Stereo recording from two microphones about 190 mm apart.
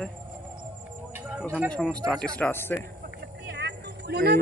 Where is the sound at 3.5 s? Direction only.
65° right (ahead or behind).